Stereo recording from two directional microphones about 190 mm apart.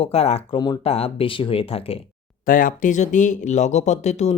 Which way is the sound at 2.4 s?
45° left (ahead or behind).